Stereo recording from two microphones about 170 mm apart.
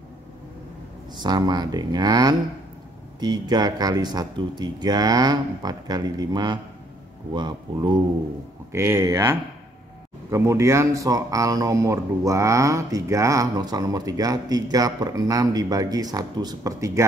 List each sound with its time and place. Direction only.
1.2 s speech: 25° right (ahead or behind)
8.7 s speech: 15° right (ahead or behind)